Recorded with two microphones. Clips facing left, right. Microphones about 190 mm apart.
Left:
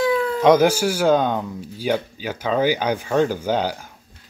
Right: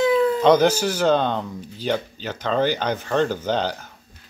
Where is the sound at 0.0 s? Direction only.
20° right (ahead or behind).